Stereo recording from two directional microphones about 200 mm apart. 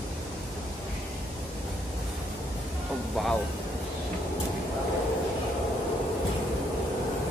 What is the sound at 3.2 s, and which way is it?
Speech, centre (ahead or behind).